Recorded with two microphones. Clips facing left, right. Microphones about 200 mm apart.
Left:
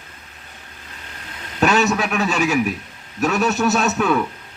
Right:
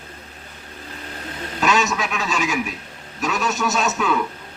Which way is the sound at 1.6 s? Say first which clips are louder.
Left 4 dB; 60° left (ahead or behind).